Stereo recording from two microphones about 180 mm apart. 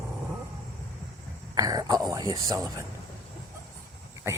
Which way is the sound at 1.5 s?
20° right (ahead or behind).